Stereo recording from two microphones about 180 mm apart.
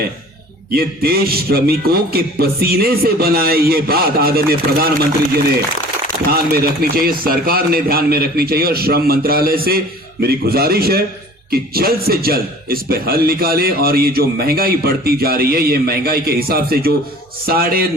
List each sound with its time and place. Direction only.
0.7 s a man's voice: 60° right (ahead or behind)
6.3 s a man's voice: 55° right (ahead or behind)